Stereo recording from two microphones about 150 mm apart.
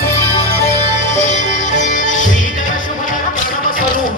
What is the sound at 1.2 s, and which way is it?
Music, 55° left (ahead or behind).